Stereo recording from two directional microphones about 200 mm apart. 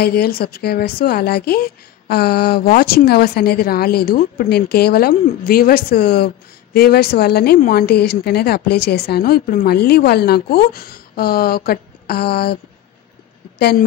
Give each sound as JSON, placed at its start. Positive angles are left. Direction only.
{"t": 0.0, "sound": "a woman's voice", "side_deg": 50}